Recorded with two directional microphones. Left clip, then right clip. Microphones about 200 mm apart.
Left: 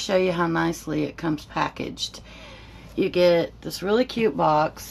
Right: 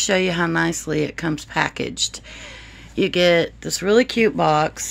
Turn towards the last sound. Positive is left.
turn(degrees=-50)  # may be behind; listen again after turning